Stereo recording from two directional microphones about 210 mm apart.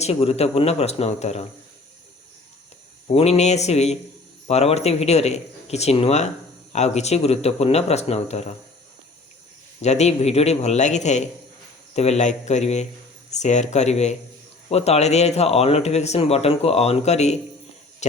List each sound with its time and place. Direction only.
0.0 s speech: 30° left (ahead or behind)
3.1 s speech: 30° left (ahead or behind)
9.8 s speech: 30° left (ahead or behind)